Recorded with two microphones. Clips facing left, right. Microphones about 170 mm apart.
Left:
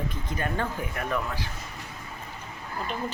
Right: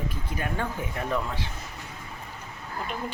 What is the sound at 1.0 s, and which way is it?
Speech, 25° right (ahead or behind).